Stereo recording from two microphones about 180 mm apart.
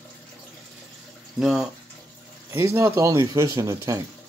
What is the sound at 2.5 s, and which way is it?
Speech, 15° right (ahead or behind).